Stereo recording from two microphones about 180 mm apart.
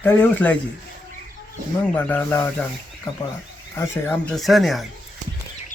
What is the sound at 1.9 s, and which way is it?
Speech, 10° left (ahead or behind).